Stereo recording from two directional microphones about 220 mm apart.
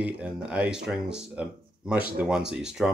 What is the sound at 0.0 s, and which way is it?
Speech, 5° right (ahead or behind).